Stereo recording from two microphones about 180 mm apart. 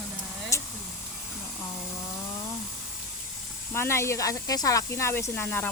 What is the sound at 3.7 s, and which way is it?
Speech, 15° left (ahead or behind).